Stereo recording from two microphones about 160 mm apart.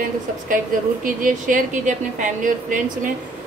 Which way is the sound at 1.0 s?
55° right (ahead or behind).